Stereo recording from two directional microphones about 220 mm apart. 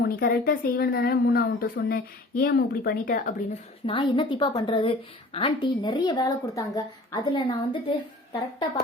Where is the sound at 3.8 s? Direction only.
25° left (ahead or behind).